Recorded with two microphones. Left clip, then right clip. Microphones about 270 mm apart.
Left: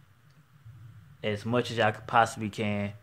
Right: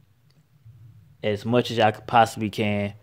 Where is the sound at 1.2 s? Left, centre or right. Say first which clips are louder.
Right 6 dB; right.